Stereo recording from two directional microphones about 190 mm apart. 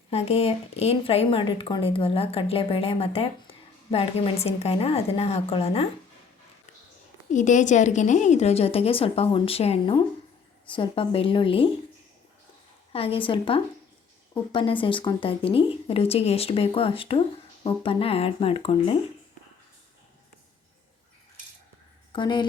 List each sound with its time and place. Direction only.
0.1 s a woman's voice: 30° left (ahead or behind)
7.3 s a woman's voice: 40° left (ahead or behind)
12.9 s a woman's voice: 30° left (ahead or behind)
22.1 s a woman's voice: 25° left (ahead or behind)